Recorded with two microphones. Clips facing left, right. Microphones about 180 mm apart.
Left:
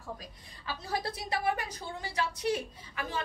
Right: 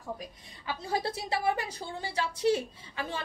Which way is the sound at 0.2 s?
25° right (ahead or behind).